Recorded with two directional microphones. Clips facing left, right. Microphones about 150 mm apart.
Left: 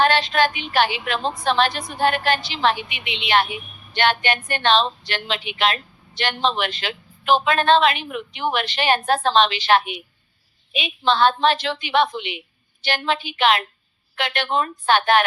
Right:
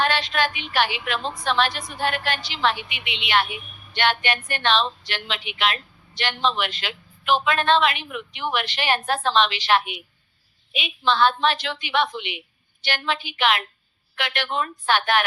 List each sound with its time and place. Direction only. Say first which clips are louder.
0.0 s a woman's voice: left 5 dB; 30° left (ahead or behind)